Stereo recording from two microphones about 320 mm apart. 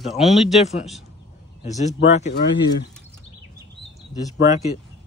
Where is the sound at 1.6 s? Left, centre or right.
Left.